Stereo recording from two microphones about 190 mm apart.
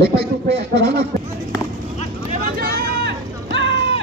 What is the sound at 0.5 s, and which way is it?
Speech, 65° right (ahead or behind).